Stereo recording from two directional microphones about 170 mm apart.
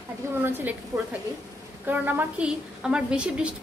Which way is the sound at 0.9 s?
20° right (ahead or behind).